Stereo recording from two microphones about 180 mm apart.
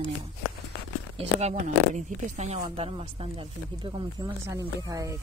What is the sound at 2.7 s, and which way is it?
Speech, 30° right (ahead or behind).